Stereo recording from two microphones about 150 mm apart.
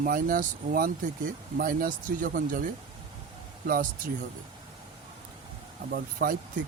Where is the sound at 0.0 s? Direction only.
70° right (ahead or behind).